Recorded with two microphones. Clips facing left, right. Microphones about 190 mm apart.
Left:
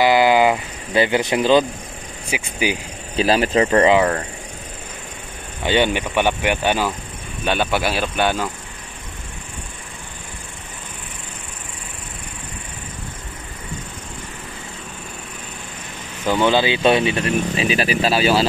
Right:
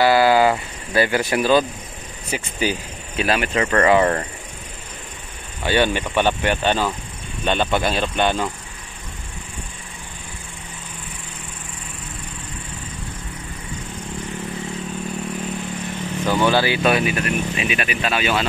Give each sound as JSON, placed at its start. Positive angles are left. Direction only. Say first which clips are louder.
{"t": 0.0, "sound": "a sound", "louder": "even", "side_deg": 20}
{"t": 2.3, "sound": "speech", "louder": "left 1 dB", "side_deg": 15}
{"t": 3.2, "sound": "speech", "louder": "left 4 dB", "side_deg": 30}
{"t": 4.0, "sound": "speech", "louder": "even", "side_deg": -5}
{"t": 5.6, "sound": "speech", "louder": "left 1 dB", "side_deg": 20}
{"t": 16.3, "sound": "speech", "louder": "left 1 dB", "side_deg": 20}